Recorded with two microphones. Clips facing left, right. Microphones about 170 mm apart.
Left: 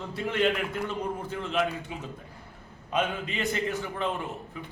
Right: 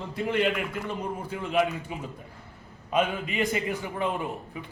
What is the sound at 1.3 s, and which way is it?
Speech, 10° right (ahead or behind).